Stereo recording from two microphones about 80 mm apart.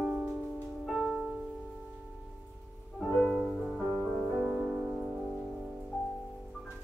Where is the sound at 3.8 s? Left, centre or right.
Centre.